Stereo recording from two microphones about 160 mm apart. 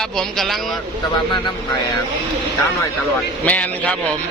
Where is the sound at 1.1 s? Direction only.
30° left (ahead or behind).